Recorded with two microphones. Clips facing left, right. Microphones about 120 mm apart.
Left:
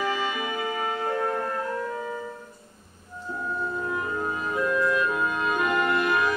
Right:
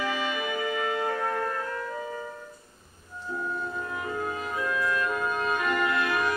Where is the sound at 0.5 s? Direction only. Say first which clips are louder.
Even; 30° left (ahead or behind).